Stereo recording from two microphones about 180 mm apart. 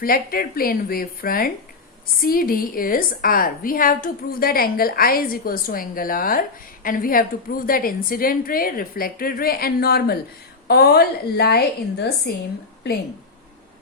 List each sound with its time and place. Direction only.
0.0 s a woman's voice: 55° left (ahead or behind)